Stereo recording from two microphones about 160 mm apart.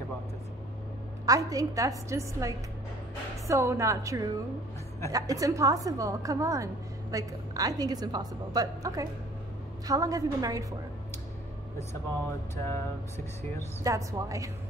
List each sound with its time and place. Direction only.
1.2 s a woman's voice: 20° right (ahead or behind)
12.6 s a sound: 15° left (ahead or behind)
13.8 s a woman's voice: 20° right (ahead or behind)